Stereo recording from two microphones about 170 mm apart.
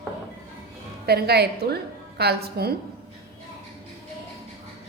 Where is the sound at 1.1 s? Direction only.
70° right (ahead or behind).